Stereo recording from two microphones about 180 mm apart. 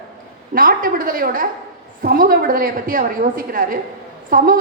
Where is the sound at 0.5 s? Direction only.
50° right (ahead or behind).